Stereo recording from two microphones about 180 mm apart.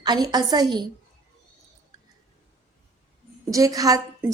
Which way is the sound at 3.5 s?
20° right (ahead or behind).